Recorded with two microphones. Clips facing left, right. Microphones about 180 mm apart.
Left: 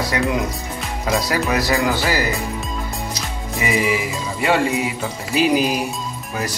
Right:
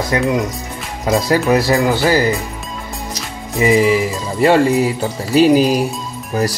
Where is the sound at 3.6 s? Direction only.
30° right (ahead or behind).